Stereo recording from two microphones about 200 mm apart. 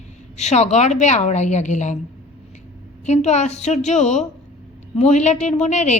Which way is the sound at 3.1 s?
35° left (ahead or behind).